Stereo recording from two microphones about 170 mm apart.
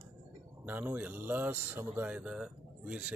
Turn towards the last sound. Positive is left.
turn(degrees=-5)  # may be behind; listen again after turning